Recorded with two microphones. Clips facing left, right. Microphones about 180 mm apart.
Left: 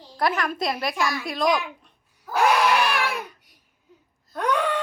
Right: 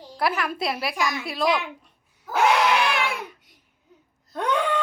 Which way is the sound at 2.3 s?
20° right (ahead or behind).